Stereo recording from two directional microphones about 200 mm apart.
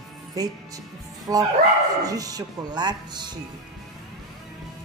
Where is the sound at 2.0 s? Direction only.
15° right (ahead or behind).